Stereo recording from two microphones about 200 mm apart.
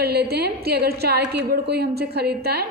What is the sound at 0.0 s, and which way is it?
A woman's voice, 55° right (ahead or behind).